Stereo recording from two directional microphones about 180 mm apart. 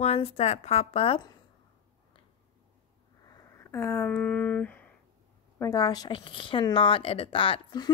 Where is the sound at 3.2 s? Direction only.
15° left (ahead or behind).